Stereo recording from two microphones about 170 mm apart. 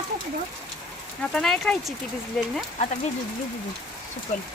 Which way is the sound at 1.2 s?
5° left (ahead or behind).